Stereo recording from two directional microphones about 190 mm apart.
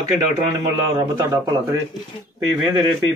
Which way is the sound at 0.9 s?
15° right (ahead or behind).